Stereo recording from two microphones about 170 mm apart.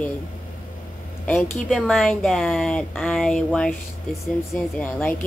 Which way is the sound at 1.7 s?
Centre (ahead or behind).